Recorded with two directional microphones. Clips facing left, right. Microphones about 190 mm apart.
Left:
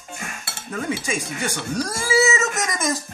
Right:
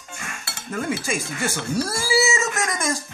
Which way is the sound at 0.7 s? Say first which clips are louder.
Even; centre (ahead or behind).